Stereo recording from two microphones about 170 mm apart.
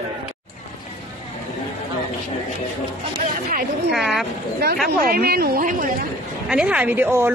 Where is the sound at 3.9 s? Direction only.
Centre (ahead or behind).